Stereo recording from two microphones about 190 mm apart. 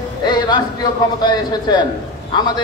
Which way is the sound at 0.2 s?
25° left (ahead or behind).